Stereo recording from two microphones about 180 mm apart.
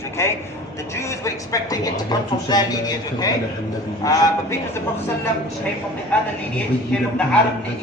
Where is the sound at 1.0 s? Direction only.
15° left (ahead or behind).